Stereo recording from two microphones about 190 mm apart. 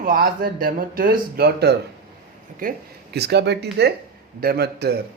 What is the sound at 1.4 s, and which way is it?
Speech, 60° right (ahead or behind).